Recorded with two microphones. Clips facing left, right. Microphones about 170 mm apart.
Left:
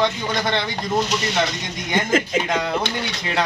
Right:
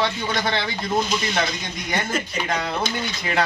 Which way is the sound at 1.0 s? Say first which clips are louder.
Left 1 dB; 75° left (ahead or behind).